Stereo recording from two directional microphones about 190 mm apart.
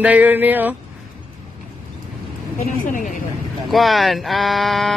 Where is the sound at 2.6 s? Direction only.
45° left (ahead or behind).